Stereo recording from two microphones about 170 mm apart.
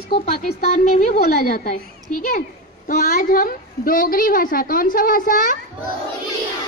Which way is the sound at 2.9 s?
50° left (ahead or behind).